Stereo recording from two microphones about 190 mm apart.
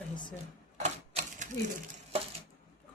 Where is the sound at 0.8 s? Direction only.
40° right (ahead or behind).